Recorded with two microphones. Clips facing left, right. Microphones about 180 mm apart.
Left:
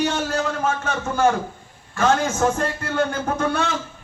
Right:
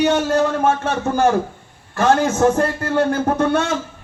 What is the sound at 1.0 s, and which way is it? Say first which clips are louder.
A man's voice: right 3 dB; 35° right (ahead or behind).